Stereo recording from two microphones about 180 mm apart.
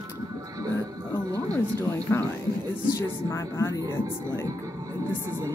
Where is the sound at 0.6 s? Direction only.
20° right (ahead or behind).